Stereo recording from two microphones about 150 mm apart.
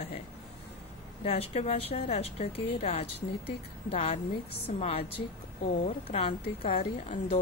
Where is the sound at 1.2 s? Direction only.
45° left (ahead or behind).